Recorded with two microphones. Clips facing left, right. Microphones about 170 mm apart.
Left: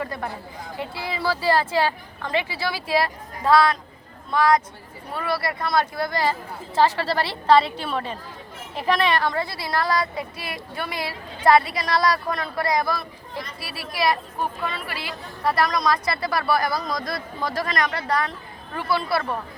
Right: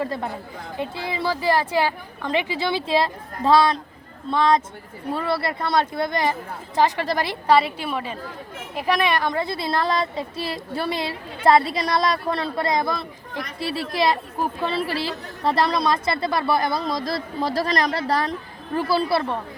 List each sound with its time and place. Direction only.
0.0 s a woman's voice: 25° right (ahead or behind)